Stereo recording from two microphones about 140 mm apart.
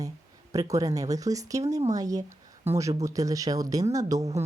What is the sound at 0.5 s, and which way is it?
Speech, 25° right (ahead or behind).